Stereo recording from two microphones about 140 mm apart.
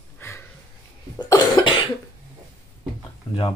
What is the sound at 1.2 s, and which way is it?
Cough, 30° left (ahead or behind).